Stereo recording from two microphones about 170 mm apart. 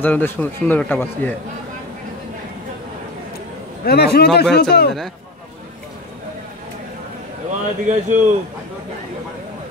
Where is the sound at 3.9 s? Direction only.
70° left (ahead or behind).